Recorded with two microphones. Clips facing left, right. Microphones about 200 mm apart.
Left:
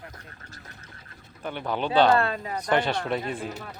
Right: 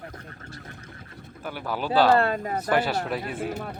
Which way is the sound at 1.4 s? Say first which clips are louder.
Left 2 dB; 5° right (ahead or behind).